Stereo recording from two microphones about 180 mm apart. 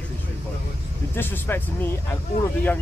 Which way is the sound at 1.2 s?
10° left (ahead or behind).